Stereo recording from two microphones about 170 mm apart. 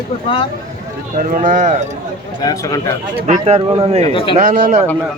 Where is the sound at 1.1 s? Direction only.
50° right (ahead or behind).